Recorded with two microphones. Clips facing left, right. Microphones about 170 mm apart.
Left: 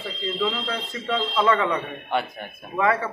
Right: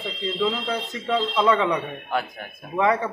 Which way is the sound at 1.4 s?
15° right (ahead or behind).